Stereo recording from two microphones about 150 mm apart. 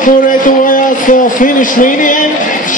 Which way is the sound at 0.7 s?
60° left (ahead or behind).